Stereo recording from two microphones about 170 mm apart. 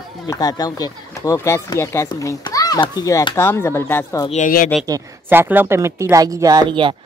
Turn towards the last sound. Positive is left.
turn(degrees=-30)  # may be behind; listen again after turning